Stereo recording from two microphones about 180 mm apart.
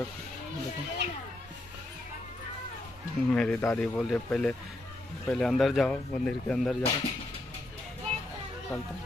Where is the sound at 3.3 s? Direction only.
5° left (ahead or behind).